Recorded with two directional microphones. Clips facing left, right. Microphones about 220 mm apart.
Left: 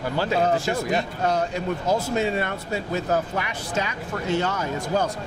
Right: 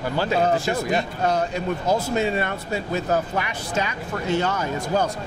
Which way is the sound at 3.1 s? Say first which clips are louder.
Right 1 dB; 20° right (ahead or behind).